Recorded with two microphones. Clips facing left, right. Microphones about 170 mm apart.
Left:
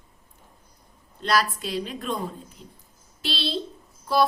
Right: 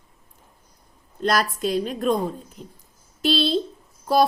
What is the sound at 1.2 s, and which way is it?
Speech, 45° right (ahead or behind).